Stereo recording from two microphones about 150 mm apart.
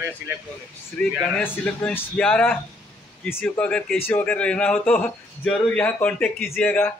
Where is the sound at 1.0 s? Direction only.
10° left (ahead or behind).